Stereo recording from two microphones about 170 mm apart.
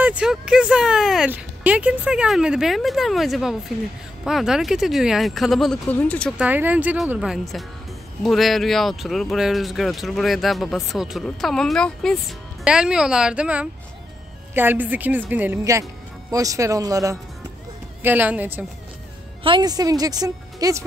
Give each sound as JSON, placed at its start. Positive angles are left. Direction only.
{"t": 0.0, "sound": "speech", "side_deg": -5}
{"t": 6.3, "sound": "a woman's voice", "side_deg": -10}
{"t": 19.4, "sound": "a woman's voice", "side_deg": -25}